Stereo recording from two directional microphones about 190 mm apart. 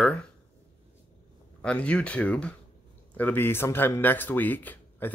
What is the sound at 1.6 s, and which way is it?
A man's voice, 5° left (ahead or behind).